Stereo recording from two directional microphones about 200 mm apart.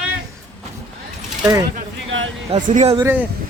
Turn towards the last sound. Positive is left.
turn(degrees=-10)  # may be behind; listen again after turning